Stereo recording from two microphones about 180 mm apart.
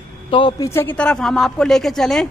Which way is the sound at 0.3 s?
25° left (ahead or behind).